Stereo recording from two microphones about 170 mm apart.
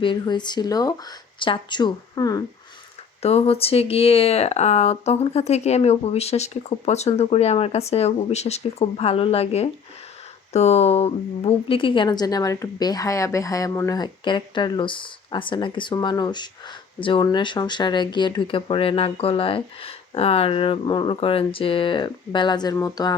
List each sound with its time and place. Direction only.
0.0 s a woman's voice: 25° left (ahead or behind)
3.2 s a woman's voice: 35° left (ahead or behind); by 23.1 s 20° left (ahead or behind)